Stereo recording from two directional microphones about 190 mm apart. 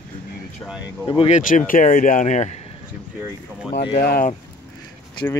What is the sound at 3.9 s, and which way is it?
Speech, 55° left (ahead or behind).